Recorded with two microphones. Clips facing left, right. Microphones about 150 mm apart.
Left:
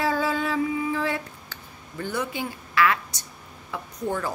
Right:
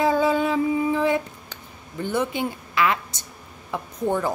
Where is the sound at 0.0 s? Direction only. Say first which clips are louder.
Right 5 dB; 20° right (ahead or behind).